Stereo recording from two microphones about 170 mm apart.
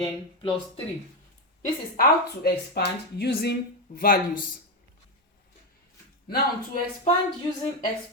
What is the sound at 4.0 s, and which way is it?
Speech, 55° left (ahead or behind).